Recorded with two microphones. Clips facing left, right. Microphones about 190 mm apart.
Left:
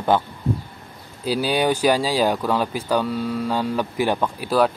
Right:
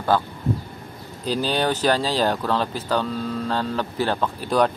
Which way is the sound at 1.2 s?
10° left (ahead or behind).